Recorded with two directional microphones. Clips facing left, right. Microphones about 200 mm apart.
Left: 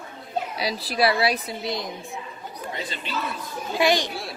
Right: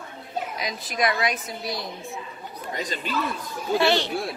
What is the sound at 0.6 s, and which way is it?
A woman's voice, 35° left (ahead or behind).